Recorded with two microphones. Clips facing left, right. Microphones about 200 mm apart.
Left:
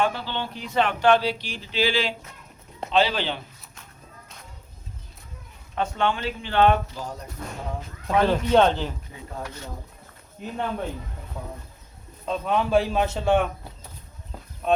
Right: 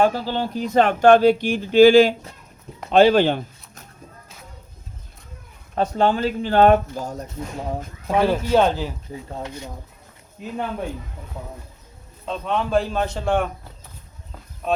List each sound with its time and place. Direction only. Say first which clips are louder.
0.0 s speech: right 6 dB; 40° right (ahead or behind)
5.7 s speech: right 6 dB; 40° right (ahead or behind)
8.1 s speech: right 1 dB; 10° right (ahead or behind)
10.4 s a man's voice: right 1 dB; 5° right (ahead or behind)
12.2 s a man's voice: even; 5° left (ahead or behind)
14.6 s speech: left 1 dB; centre (ahead or behind)